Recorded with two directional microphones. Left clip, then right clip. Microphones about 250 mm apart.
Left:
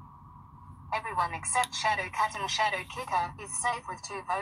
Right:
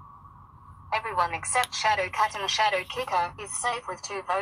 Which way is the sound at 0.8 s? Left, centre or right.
Right.